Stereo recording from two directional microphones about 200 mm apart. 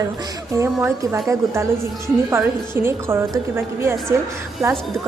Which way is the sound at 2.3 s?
10° right (ahead or behind).